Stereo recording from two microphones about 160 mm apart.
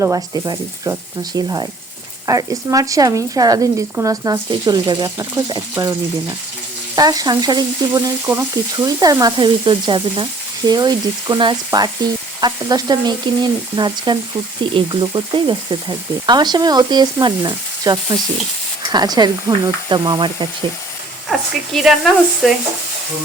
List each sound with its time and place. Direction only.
0.0 s speech: 25° right (ahead or behind)
21.2 s speech: centre (ahead or behind)